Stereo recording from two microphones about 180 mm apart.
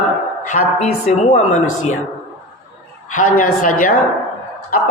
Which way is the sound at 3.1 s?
45° left (ahead or behind).